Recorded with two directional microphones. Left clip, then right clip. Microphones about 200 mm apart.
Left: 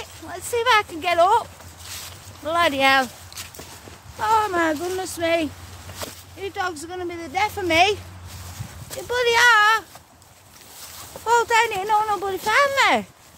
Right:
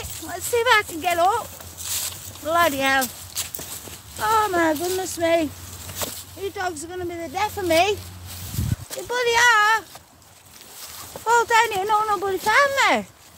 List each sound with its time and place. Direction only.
0.0 s speech: 5° right (ahead or behind)
1.0 s speech: 10° left (ahead or behind)
1.9 s walk: 60° right (ahead or behind)
2.4 s speech: 5° left (ahead or behind)
3.4 s clip-clop: 60° right (ahead or behind)
4.2 s speech: centre (ahead or behind)
9.0 s speech: 5° left (ahead or behind)
11.2 s speech: centre (ahead or behind)